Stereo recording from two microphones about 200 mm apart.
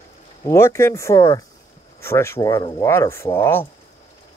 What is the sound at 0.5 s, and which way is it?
Speech, 15° left (ahead or behind).